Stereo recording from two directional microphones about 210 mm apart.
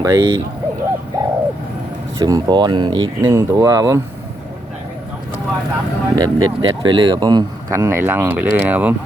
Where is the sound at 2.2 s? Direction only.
20° right (ahead or behind).